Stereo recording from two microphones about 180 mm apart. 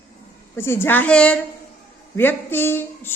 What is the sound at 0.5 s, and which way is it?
Speech, 15° left (ahead or behind).